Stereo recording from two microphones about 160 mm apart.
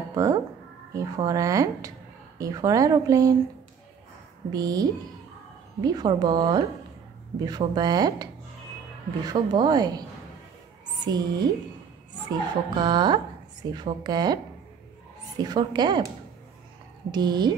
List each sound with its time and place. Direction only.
0.1 s speech: 20° right (ahead or behind)
4.5 s speech: 25° right (ahead or behind)
11.1 s a woman's voice: 25° right (ahead or behind)
17.1 s speech: 25° right (ahead or behind)